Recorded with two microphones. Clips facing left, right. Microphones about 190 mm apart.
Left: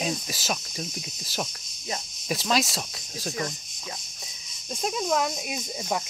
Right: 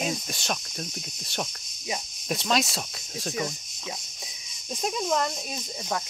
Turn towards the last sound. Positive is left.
turn(degrees=10)  # may be behind; listen again after turning